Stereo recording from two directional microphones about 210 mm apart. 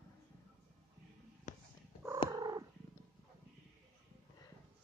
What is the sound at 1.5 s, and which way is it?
Purr, 35° left (ahead or behind).